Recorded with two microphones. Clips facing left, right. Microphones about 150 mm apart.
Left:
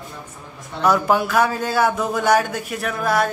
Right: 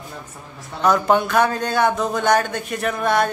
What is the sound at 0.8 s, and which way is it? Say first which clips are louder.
Speech: right 1 dB; 5° left (ahead or behind).